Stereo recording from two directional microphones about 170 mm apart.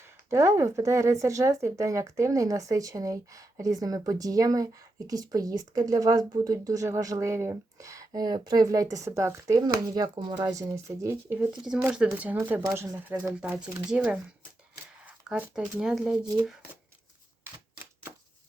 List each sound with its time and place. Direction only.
0.3 s speech: 15° right (ahead or behind)
14.9 s shuffling cards: 5° right (ahead or behind)
15.8 s speech: 5° right (ahead or behind)